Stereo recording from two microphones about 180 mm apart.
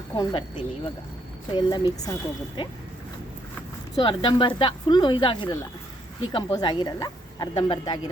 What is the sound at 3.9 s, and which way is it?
A woman's voice, 30° left (ahead or behind).